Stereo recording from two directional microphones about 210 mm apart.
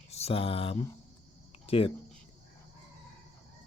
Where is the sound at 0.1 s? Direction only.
30° left (ahead or behind).